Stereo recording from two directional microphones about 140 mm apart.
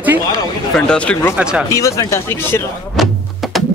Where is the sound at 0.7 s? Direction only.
5° left (ahead or behind).